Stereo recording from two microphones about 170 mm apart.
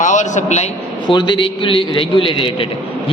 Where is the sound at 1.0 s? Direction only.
30° left (ahead or behind).